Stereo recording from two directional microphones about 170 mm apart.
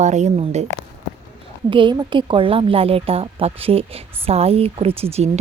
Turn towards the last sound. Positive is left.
turn(degrees=-40)  # may be behind; listen again after turning